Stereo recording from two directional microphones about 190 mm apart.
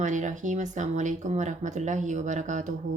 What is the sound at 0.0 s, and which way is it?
Speech, 40° right (ahead or behind).